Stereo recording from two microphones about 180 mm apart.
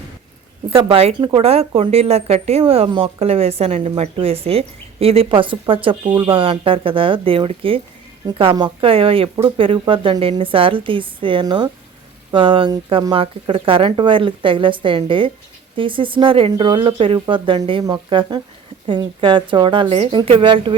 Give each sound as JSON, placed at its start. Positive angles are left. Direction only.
{"t": 0.7, "sound": "speech", "side_deg": -30}